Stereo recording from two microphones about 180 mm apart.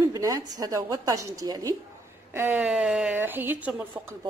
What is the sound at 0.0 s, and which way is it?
A woman's voice, 20° right (ahead or behind).